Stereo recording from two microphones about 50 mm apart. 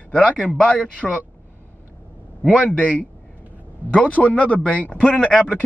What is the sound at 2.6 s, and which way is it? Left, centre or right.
Speech, left.